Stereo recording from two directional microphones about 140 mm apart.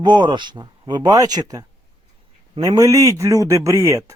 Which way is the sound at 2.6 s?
25° right (ahead or behind).